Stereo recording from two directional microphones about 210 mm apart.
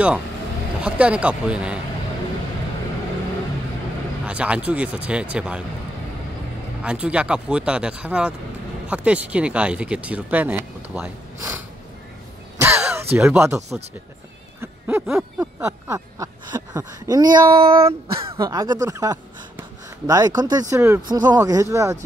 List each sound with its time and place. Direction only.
0.7 s speech: 5° right (ahead or behind)
4.3 s speech: 5° right (ahead or behind)
6.8 s speech: 5° right (ahead or behind)
12.5 s throat clearing: 10° right (ahead or behind)
14.6 s a sound: 10° right (ahead or behind)
15.6 s speech: 15° right (ahead or behind)